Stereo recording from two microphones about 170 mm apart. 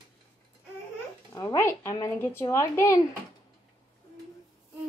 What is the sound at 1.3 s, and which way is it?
Speech, 15° left (ahead or behind).